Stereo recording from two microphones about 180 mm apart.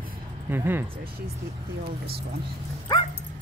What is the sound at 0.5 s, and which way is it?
Speech, 10° right (ahead or behind).